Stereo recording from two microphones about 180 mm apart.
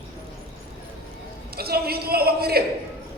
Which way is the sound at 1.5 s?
60° right (ahead or behind).